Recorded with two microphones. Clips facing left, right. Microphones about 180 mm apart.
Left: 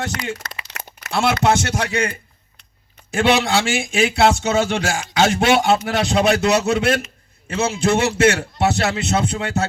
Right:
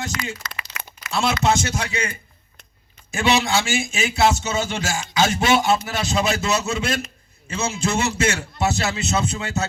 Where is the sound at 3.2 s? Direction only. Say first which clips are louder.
Left 3 dB; 65° left (ahead or behind).